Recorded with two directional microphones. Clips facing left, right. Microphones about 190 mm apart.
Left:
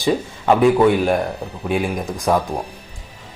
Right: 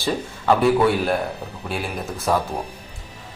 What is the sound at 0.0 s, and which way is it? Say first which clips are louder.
Speech: left 5 dB; 15° left (ahead or behind).